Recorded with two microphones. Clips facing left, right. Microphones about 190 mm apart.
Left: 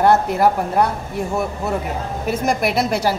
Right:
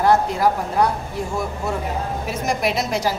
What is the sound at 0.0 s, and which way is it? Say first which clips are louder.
Speech: left 2 dB; 60° left (ahead or behind).